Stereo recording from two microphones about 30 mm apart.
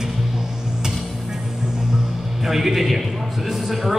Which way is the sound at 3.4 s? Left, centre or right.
Centre.